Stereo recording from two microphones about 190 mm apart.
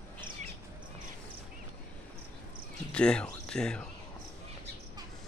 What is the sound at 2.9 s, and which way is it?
Speech, 5° left (ahead or behind).